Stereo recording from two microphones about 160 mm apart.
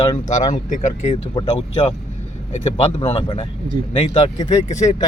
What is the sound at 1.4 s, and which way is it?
Speech, 35° left (ahead or behind).